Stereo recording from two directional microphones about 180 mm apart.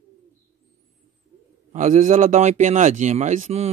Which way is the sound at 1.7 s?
45° right (ahead or behind).